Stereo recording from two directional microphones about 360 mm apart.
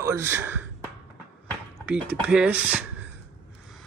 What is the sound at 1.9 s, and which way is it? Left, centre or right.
Speech, centre.